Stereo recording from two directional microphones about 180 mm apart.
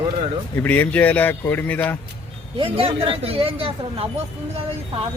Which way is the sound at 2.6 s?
30° right (ahead or behind).